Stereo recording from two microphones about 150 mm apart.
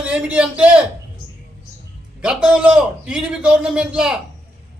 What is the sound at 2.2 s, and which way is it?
A man's voice, 5° right (ahead or behind).